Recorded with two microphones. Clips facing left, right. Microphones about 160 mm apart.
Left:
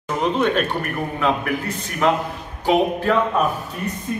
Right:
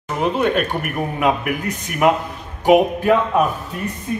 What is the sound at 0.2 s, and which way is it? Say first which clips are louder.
A man's voice: right 1 dB; 5° right (ahead or behind).